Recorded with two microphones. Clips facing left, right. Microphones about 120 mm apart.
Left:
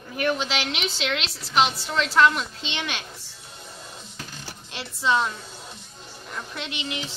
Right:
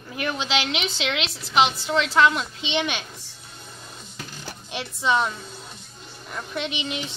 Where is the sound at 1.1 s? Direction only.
10° right (ahead or behind).